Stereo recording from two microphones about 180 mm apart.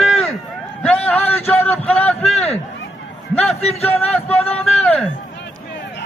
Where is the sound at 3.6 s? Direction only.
35° left (ahead or behind).